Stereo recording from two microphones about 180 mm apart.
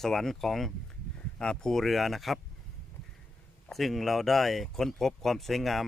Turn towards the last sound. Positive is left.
turn(degrees=0)  # may be behind; listen again after turning